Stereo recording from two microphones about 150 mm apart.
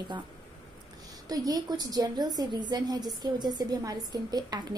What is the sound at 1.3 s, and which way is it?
A woman's voice, 25° right (ahead or behind).